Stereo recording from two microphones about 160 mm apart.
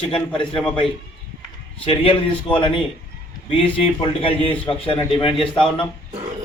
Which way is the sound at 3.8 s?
35° left (ahead or behind).